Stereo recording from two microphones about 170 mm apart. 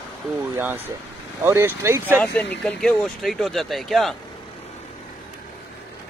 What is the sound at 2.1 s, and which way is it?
Speech, 10° left (ahead or behind).